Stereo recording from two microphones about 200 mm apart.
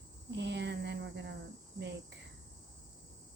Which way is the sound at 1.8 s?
60° right (ahead or behind).